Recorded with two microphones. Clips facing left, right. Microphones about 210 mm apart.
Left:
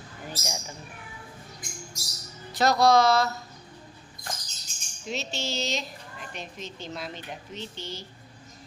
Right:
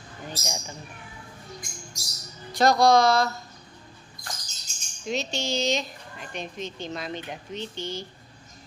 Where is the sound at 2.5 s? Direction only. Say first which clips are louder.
Right 2 dB; 5° left (ahead or behind).